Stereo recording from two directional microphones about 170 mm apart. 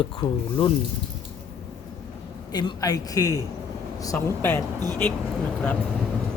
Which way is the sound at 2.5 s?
25° left (ahead or behind).